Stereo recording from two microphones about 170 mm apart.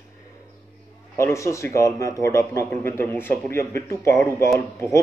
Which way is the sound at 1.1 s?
15° left (ahead or behind).